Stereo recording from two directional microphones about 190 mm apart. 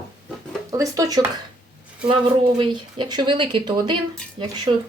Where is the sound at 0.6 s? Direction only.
15° right (ahead or behind).